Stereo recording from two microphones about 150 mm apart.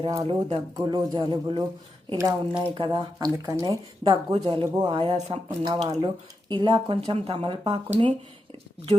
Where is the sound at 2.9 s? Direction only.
25° right (ahead or behind).